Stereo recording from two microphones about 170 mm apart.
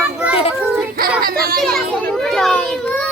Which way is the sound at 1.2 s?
60° right (ahead or behind).